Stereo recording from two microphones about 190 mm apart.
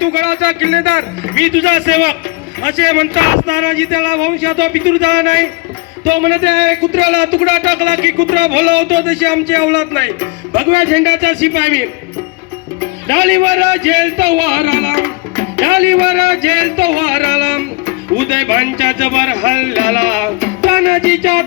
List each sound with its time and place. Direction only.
0.0 s a sound: 65° right (ahead or behind)
0.9 s a man's voice: 65° right (ahead or behind)
13.8 s a man's voice: 65° right (ahead or behind)
18.2 s speech: 65° right (ahead or behind)
20.4 s music: 55° right (ahead or behind)